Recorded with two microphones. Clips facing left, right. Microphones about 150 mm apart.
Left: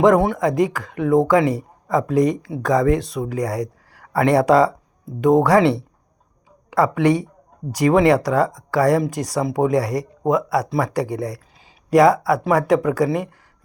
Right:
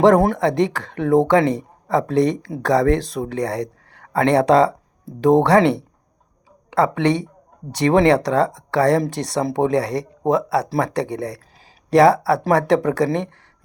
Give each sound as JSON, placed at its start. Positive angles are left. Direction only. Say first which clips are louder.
{"t": 0.0, "sound": "speech", "louder": "right 1 dB", "side_deg": -35}
{"t": 6.7, "sound": "speech", "louder": "left 1 dB", "side_deg": -25}